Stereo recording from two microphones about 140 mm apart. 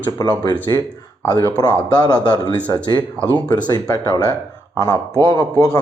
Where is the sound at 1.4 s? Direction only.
25° left (ahead or behind).